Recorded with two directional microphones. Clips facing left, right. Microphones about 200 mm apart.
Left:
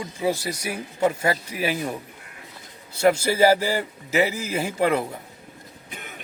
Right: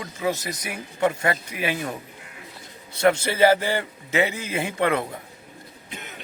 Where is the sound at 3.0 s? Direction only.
10° left (ahead or behind).